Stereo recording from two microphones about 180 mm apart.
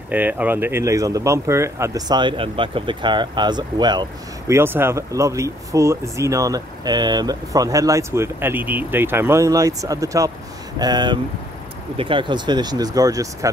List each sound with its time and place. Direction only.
0.1 s speech: 10° right (ahead or behind)
4.6 s speech: 15° right (ahead or behind)